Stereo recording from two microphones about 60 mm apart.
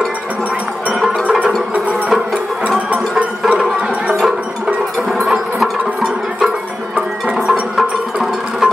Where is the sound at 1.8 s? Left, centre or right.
Centre.